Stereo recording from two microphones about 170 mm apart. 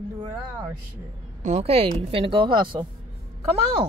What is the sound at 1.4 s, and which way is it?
Speech, 40° right (ahead or behind).